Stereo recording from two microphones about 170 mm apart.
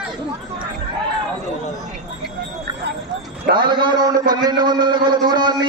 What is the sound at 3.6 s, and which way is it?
A man's voice, 25° right (ahead or behind).